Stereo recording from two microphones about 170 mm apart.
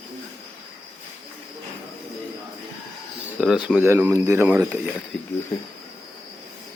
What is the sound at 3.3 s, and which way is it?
Speech, 5° right (ahead or behind).